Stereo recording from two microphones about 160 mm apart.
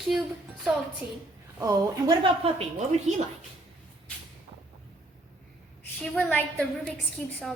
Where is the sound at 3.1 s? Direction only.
50° right (ahead or behind).